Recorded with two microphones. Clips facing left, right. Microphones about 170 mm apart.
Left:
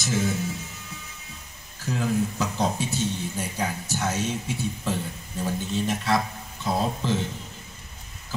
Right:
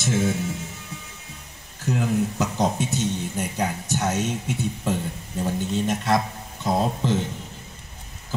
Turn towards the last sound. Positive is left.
turn(degrees=-20)  # may be behind; listen again after turning